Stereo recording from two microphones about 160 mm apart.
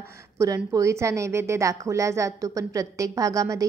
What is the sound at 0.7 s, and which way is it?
A woman's voice, 20° right (ahead or behind).